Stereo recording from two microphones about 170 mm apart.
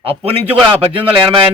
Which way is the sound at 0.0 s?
35° right (ahead or behind).